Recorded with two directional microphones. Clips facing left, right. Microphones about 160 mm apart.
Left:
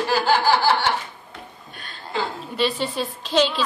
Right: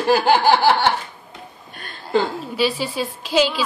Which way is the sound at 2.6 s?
5° right (ahead or behind).